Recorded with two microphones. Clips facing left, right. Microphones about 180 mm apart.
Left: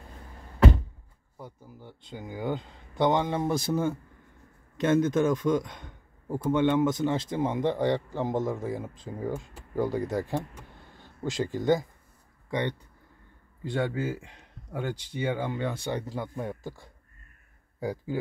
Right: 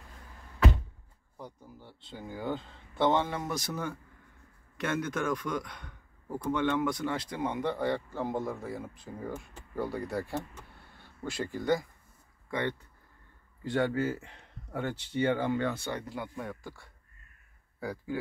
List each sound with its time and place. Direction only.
1.4 s a man's voice: 10° left (ahead or behind)
13.7 s a man's voice: 10° left (ahead or behind)
16.1 s speech: 25° left (ahead or behind)